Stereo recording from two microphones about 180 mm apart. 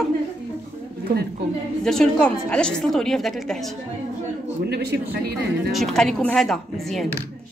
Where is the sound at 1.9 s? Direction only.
5° left (ahead or behind).